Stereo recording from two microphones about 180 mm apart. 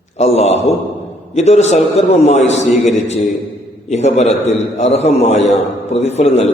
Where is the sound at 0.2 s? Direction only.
35° left (ahead or behind).